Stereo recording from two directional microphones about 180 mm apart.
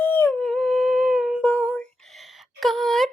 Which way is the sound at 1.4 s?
5° left (ahead or behind).